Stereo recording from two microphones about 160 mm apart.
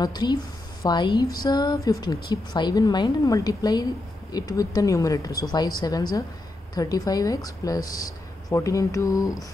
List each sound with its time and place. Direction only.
0.0 s a woman's voice: 25° left (ahead or behind)